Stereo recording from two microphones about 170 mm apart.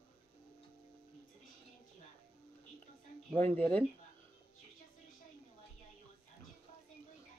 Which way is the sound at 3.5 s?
10° left (ahead or behind).